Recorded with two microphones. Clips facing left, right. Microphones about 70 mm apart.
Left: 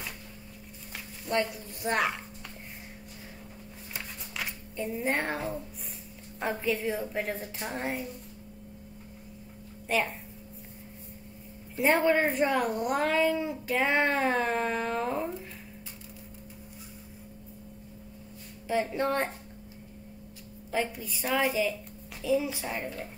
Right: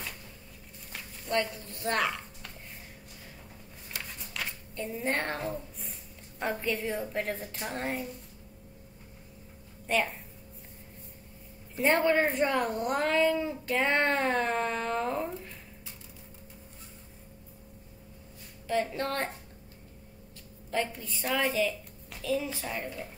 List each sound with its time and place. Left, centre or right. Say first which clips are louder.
0.9 s a woman's voice: left 1 dB; centre
3.9 s a sound: even; centre
6.4 s speech: left 2 dB; centre
9.8 s a woman's voice: even; centre
11.8 s speech: left 1 dB; centre
18.7 s a woman's voice: left 2 dB; centre
20.7 s a woman's voice: left 1 dB; centre